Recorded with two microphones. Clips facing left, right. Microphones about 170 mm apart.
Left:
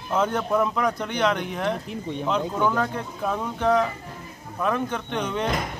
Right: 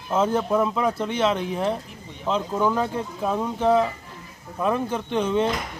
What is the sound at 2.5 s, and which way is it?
Speech, 10° right (ahead or behind).